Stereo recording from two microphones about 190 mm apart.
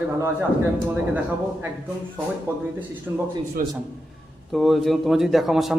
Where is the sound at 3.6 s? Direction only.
45° right (ahead or behind).